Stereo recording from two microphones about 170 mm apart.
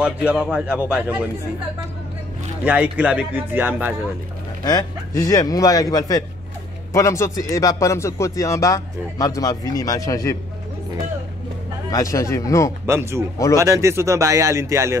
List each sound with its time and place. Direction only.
0.0 s speech: 5° right (ahead or behind)
2.6 s speech: 10° right (ahead or behind)
4.6 s speech: 20° left (ahead or behind)
11.9 s speech: 20° left (ahead or behind)
12.8 s speech: 15° right (ahead or behind)